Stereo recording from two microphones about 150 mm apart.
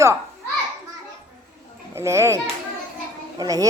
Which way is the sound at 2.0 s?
20° right (ahead or behind).